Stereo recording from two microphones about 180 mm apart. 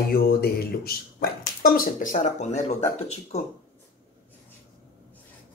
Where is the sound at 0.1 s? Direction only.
55° left (ahead or behind); by 2.8 s 40° left (ahead or behind).